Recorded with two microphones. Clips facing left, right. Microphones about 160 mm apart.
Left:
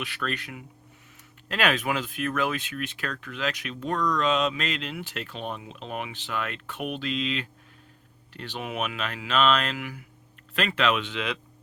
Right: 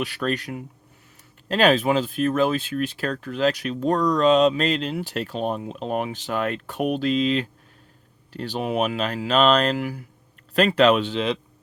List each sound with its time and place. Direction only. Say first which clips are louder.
0.0 s speech: right 7 dB; 40° right (ahead or behind)